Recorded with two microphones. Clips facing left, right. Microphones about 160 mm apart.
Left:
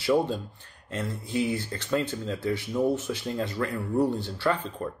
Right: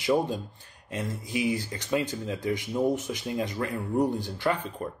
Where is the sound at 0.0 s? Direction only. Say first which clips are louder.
Left 1 dB; 15° right (ahead or behind).